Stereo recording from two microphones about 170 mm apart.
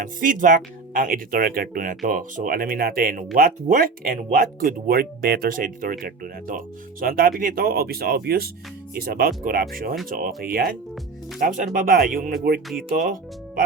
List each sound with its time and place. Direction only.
0.0 s speech: 55° right (ahead or behind)